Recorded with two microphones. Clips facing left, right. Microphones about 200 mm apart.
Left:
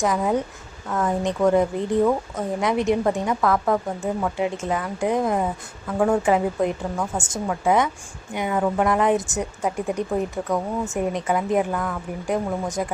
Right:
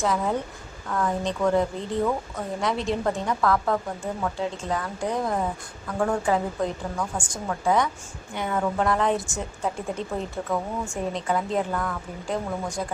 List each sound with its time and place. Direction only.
0.0 s a woman's voice: 15° left (ahead or behind)
8.4 s a woman's voice: 10° left (ahead or behind)